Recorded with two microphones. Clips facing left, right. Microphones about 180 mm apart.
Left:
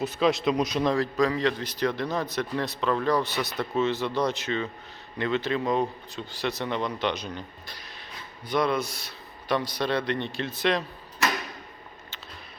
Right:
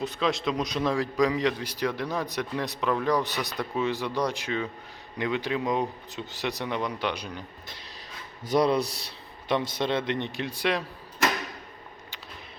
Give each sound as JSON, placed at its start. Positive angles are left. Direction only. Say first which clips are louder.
{"t": 0.0, "sound": "speech", "louder": "left 4 dB", "side_deg": 5}
{"t": 0.9, "sound": "a man's voice", "louder": "even", "side_deg": -15}
{"t": 8.4, "sound": "a man's voice", "louder": "right 2 dB", "side_deg": -35}
{"t": 9.5, "sound": "a man's voice", "louder": "even", "side_deg": -25}